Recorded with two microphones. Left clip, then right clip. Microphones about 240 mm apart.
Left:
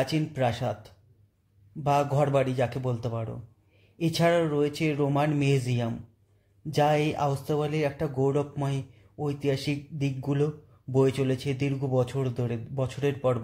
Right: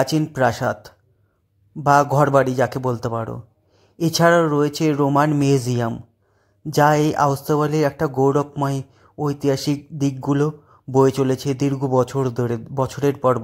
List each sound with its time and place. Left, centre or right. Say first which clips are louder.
0.4 s a man's voice: right 10 dB; right